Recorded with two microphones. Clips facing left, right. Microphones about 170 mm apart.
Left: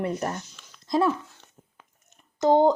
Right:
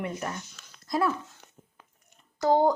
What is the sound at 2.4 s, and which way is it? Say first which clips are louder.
Speech: left 3 dB; 20° left (ahead or behind).